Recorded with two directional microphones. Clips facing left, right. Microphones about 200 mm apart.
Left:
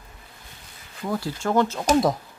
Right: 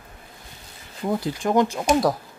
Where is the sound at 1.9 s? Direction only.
Centre (ahead or behind).